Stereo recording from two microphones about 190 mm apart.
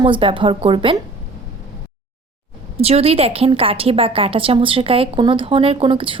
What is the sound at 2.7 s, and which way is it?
A woman's voice, 30° right (ahead or behind).